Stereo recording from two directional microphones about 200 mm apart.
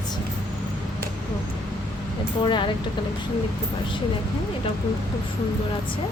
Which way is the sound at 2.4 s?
25° left (ahead or behind).